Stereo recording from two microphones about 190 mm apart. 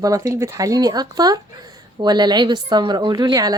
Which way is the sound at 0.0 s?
15° right (ahead or behind).